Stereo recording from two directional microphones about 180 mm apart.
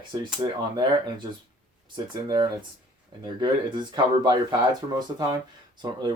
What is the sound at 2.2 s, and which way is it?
Speech, 25° right (ahead or behind).